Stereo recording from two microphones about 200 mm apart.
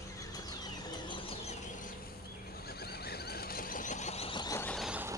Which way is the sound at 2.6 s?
50° left (ahead or behind).